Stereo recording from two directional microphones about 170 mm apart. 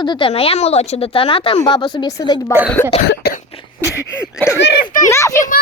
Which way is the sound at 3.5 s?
35° left (ahead or behind).